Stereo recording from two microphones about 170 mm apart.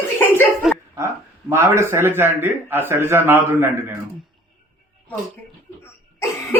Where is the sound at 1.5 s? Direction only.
15° right (ahead or behind).